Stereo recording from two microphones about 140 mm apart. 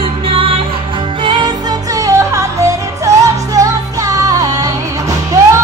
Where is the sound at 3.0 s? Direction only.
25° right (ahead or behind).